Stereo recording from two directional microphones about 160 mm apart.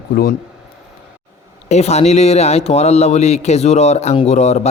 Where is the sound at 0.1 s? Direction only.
65° left (ahead or behind).